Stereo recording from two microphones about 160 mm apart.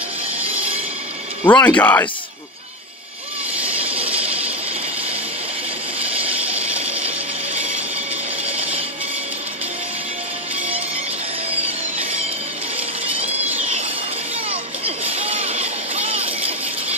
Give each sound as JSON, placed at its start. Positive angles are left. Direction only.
{"t": 1.4, "sound": "speech", "side_deg": 10}
{"t": 8.5, "sound": "music", "side_deg": -35}
{"t": 14.5, "sound": "a sound", "side_deg": -35}